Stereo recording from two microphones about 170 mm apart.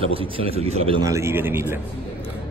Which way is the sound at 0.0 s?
30° right (ahead or behind).